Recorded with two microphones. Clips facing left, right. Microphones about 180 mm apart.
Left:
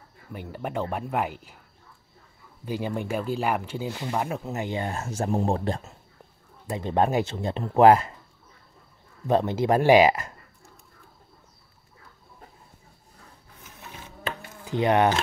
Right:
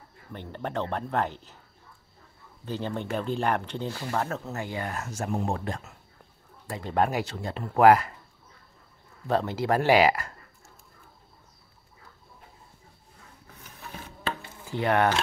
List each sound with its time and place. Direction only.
0.3 s speech: 10° left (ahead or behind)
2.6 s speech: 10° left (ahead or behind)
9.3 s speech: 20° left (ahead or behind)
14.7 s speech: 20° left (ahead or behind)